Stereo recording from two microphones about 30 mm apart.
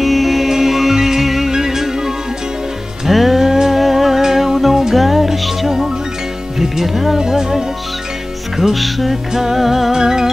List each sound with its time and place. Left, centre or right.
0.0 s music: centre
1.5 s music: centre
6.6 s speech: centre
7.2 s music: centre
8.7 s music: centre
9.9 s music: centre